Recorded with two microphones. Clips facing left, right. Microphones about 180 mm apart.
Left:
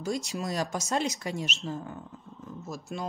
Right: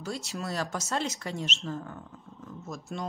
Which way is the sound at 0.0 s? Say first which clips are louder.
Left 4 dB; 15° left (ahead or behind).